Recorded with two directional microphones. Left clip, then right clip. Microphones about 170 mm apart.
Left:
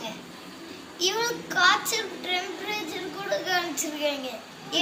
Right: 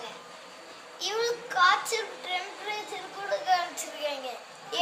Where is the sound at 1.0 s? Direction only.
25° right (ahead or behind).